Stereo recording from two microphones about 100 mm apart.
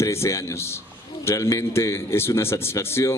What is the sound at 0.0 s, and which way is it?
A man's voice, 30° left (ahead or behind).